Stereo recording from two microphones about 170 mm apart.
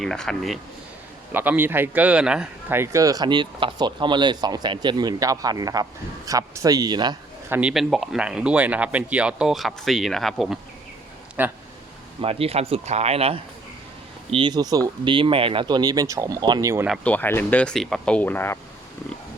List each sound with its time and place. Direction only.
0.0 s speech: 5° left (ahead or behind)
1.3 s a man's voice: 10° right (ahead or behind)
7.5 s speech: 5° right (ahead or behind)
11.4 s speech: 10° right (ahead or behind)
12.2 s a man's voice: 35° right (ahead or behind); by 16.8 s 20° right (ahead or behind)
17.0 s speech: 10° left (ahead or behind)